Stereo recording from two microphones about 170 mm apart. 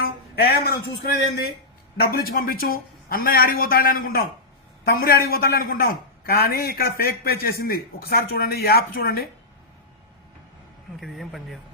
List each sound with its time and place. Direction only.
0.0 s a sound: 65° left (ahead or behind)
2.0 s a man's voice: 65° left (ahead or behind)
11.0 s speech: centre (ahead or behind)